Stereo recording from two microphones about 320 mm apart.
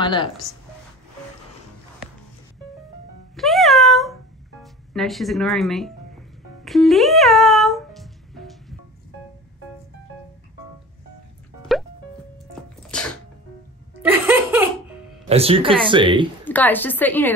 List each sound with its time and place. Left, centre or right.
0.0 s speech: centre
3.3 s music: centre
6.6 s cat: centre
11.7 s music: centre
12.8 s sneeze: centre
14.0 s laughter: centre
15.2 s speech: centre
16.4 s a woman's voice: centre